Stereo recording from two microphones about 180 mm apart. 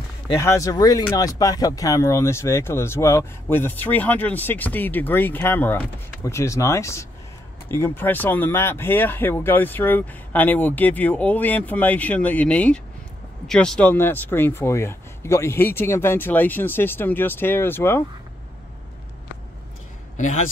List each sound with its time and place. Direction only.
0.4 s speech: 15° left (ahead or behind)
20.2 s a man's voice: 40° left (ahead or behind)